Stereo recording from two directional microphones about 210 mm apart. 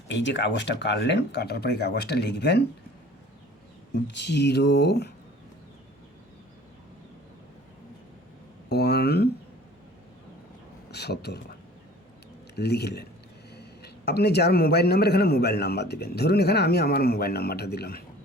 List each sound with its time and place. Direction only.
0.1 s speech: 60° left (ahead or behind)
4.0 s speech: 55° left (ahead or behind)
8.7 s a sound: 50° left (ahead or behind)
10.9 s speech: 50° left (ahead or behind)
12.5 s speech: 50° left (ahead or behind)